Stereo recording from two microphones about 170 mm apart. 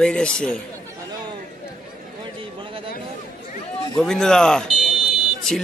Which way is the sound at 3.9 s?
5° left (ahead or behind).